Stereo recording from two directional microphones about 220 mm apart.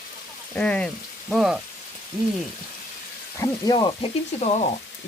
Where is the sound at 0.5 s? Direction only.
5° left (ahead or behind).